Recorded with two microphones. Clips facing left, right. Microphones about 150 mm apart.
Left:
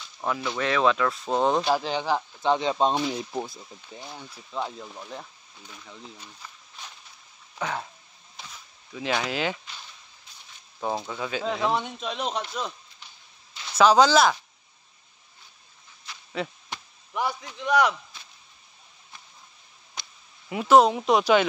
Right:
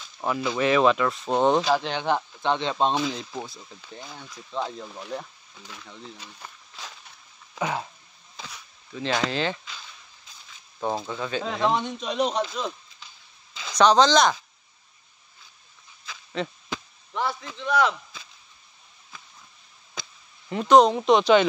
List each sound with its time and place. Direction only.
0.2 s speech: 5° right (ahead or behind); by 3.4 s 15° left (ahead or behind)
4.5 s speech: 5° left (ahead or behind)
6.1 s a sound: 90° right
7.5 s speech: 5° right (ahead or behind)
8.9 s speech: 10° left (ahead or behind)
10.8 s speech: 5° left (ahead or behind)
13.7 s speech: 5° left (ahead or behind)
16.4 s speech: 5° left (ahead or behind)
20.4 s speech: 5° left (ahead or behind)